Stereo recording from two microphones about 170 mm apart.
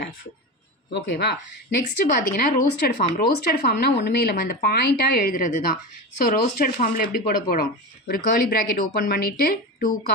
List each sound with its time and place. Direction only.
0.9 s speech: 80° left; by 10.0 s 60° left (ahead or behind)